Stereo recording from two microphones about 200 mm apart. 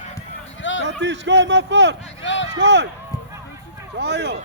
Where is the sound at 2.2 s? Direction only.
65° left (ahead or behind).